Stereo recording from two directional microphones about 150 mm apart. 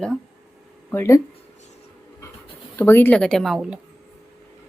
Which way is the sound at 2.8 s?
15° left (ahead or behind).